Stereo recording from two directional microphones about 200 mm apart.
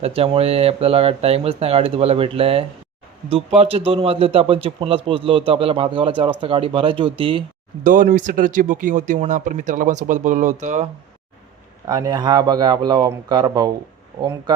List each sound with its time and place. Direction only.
0.0 s a man's voice: 30° right (ahead or behind)
7.9 s speech: 40° right (ahead or behind)
11.9 s a man's voice: 20° right (ahead or behind)